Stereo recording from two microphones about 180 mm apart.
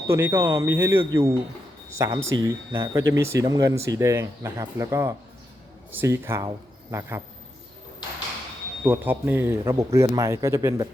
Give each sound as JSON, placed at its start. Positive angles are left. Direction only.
{"t": 0.1, "sound": "a man's voice", "side_deg": -15}
{"t": 8.8, "sound": "a man's voice", "side_deg": -10}